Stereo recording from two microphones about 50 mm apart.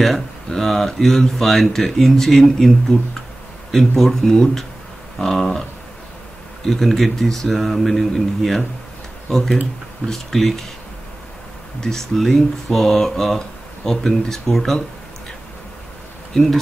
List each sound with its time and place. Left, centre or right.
0.5 s speech: centre
11.8 s speech: centre